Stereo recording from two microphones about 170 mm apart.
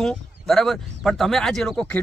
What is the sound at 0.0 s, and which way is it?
Speech, centre (ahead or behind).